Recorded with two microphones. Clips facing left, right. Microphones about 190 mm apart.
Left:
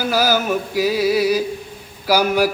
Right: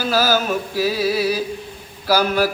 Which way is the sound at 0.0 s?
15° left (ahead or behind).